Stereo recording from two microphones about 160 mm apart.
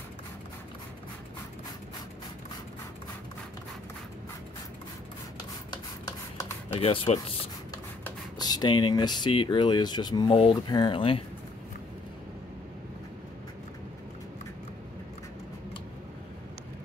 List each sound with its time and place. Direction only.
6.7 s speech: 35° left (ahead or behind)
8.4 s speech: 25° left (ahead or behind)